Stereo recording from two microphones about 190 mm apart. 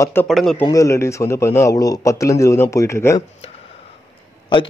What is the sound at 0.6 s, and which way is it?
Speech, 15° left (ahead or behind).